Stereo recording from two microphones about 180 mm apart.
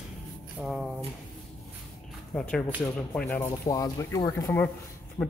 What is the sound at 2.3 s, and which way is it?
Speech, 5° left (ahead or behind).